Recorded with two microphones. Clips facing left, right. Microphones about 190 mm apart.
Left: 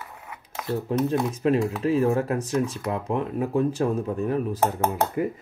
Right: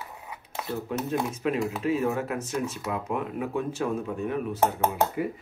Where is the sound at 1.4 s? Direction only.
35° left (ahead or behind).